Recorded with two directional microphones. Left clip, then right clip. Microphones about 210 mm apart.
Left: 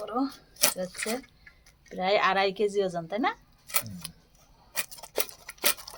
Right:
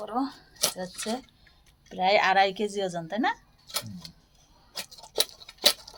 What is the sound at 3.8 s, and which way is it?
Tick-tock, 35° left (ahead or behind).